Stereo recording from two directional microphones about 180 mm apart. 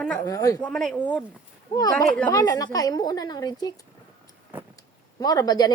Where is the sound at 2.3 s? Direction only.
20° left (ahead or behind).